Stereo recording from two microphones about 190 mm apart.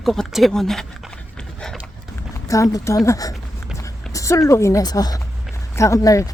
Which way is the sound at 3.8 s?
15° left (ahead or behind).